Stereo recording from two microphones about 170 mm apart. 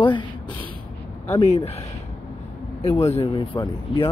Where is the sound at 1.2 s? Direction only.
35° left (ahead or behind).